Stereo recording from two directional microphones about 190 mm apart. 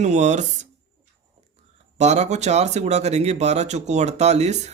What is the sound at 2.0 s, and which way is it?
Speech, 35° right (ahead or behind).